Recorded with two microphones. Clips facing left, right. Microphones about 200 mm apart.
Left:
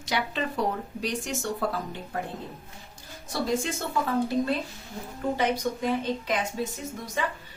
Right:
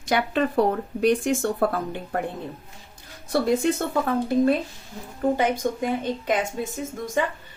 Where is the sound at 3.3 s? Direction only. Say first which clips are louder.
Right 7 dB; 60° right (ahead or behind).